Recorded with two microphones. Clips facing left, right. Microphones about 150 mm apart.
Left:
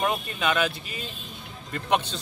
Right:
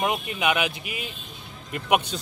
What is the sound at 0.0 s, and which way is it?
Speech, 15° right (ahead or behind).